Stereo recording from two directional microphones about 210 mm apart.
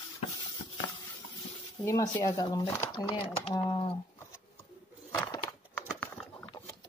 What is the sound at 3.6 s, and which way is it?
Typing, 25° left (ahead or behind).